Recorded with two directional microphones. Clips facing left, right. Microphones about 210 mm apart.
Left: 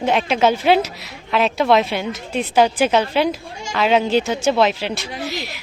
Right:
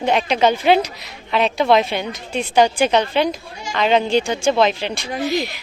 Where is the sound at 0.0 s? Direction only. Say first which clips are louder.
Even; centre (ahead or behind).